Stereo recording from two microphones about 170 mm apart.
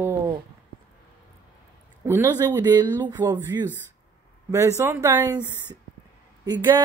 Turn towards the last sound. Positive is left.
turn(degrees=-25)  # may be behind; listen again after turning